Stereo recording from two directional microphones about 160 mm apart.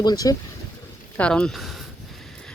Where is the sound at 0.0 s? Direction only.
25° left (ahead or behind).